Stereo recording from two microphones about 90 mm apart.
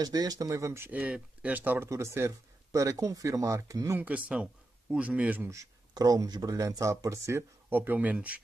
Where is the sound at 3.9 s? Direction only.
15° right (ahead or behind).